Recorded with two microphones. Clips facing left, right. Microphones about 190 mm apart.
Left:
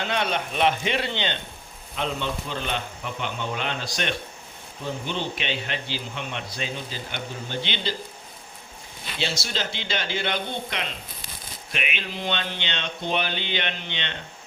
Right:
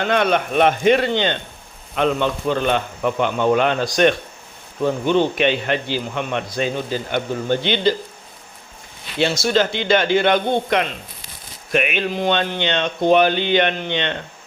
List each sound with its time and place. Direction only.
0.0 s a man's voice: 55° right (ahead or behind)
2.0 s a man's voice: 60° right (ahead or behind)
9.1 s a man's voice: 50° right (ahead or behind)